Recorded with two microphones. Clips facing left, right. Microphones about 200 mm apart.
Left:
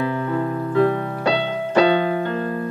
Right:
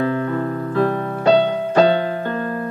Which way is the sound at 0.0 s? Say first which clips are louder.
Right 3 dB; 55° right (ahead or behind).